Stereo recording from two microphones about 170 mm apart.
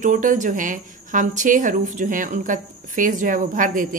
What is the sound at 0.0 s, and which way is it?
Speech, 50° right (ahead or behind).